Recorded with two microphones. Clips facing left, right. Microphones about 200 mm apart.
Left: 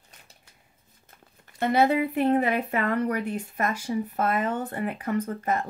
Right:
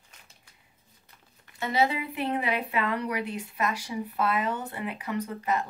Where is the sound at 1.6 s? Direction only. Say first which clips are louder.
Left 5 dB; 55° left (ahead or behind).